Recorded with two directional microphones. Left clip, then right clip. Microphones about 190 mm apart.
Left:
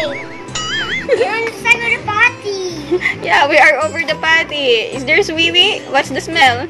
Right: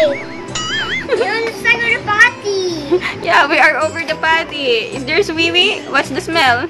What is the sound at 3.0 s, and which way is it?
A woman's voice, centre (ahead or behind).